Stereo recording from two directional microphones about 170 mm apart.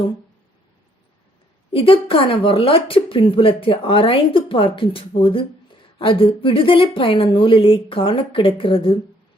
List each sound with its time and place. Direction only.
1.7 s speech: 30° left (ahead or behind)